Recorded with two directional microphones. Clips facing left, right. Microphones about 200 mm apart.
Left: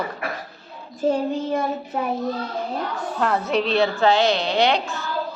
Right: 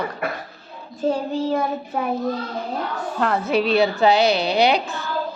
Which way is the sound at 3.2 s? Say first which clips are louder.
Right 1 dB; centre (ahead or behind).